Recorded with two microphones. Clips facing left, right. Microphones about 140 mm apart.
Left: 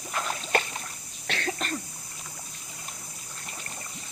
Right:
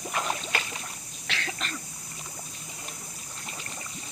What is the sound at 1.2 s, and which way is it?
Cough, 45° left (ahead or behind).